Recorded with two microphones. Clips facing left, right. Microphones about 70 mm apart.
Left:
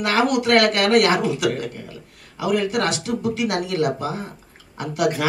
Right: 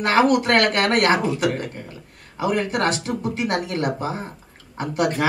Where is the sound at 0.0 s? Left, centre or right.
Right.